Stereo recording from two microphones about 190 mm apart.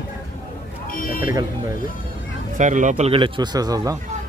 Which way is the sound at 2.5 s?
40° right (ahead or behind).